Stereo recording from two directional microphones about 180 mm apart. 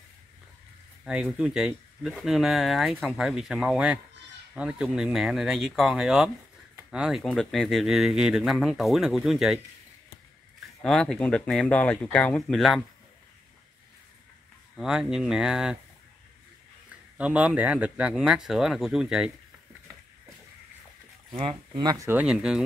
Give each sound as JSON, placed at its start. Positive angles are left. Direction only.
{"t": 1.0, "sound": "speech", "side_deg": -5}
{"t": 10.8, "sound": "speech", "side_deg": 5}
{"t": 14.8, "sound": "speech", "side_deg": -5}
{"t": 17.2, "sound": "speech", "side_deg": -5}
{"t": 21.4, "sound": "speech", "side_deg": -30}
{"t": 22.0, "sound": "speech", "side_deg": -10}